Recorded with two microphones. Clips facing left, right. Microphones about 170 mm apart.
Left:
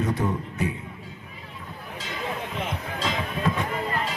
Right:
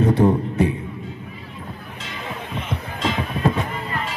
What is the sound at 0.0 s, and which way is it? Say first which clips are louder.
Music: right 9 dB; 30° right (ahead or behind).